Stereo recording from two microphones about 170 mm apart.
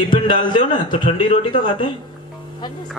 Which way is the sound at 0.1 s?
30° left (ahead or behind).